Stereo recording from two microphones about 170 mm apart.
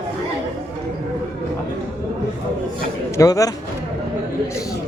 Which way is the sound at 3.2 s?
20° left (ahead or behind).